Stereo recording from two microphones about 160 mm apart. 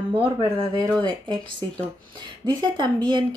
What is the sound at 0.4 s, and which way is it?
Speech, 30° left (ahead or behind).